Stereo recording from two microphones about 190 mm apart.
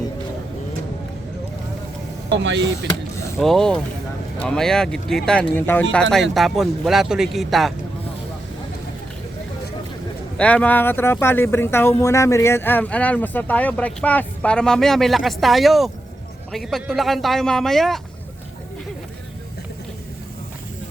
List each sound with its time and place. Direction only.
2.4 s speech: 70° right (ahead or behind)
3.3 s speech: centre (ahead or behind)
10.3 s speech: 5° left (ahead or behind)